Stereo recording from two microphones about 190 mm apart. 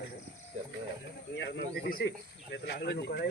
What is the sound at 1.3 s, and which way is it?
Speech, 65° left (ahead or behind).